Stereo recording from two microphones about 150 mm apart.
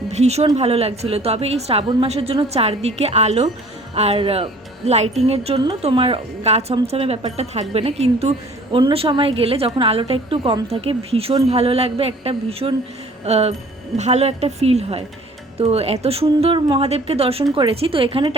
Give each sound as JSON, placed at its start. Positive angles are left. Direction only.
{"t": 0.1, "sound": "a woman's voice", "side_deg": -45}